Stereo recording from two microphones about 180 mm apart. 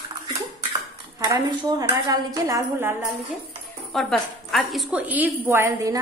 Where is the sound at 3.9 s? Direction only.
Centre (ahead or behind); by 5.9 s 15° right (ahead or behind).